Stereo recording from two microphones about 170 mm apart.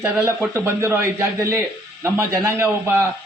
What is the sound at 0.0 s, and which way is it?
A man's voice, 15° right (ahead or behind).